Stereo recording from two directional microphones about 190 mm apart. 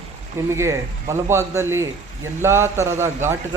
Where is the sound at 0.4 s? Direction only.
15° right (ahead or behind).